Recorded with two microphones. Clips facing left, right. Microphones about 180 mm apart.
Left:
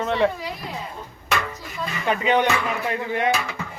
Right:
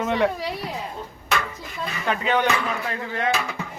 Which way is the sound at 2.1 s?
5° left (ahead or behind).